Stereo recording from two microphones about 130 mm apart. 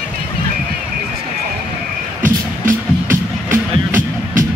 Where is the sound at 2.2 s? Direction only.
90° right.